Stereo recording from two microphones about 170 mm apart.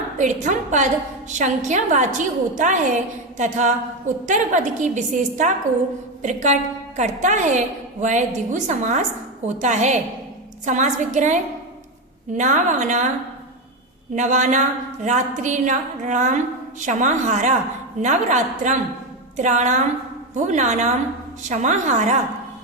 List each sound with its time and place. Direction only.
0.2 s a woman's voice: 45° right (ahead or behind)
12.4 s a woman's voice: 45° right (ahead or behind)
14.2 s a woman's voice: 45° right (ahead or behind)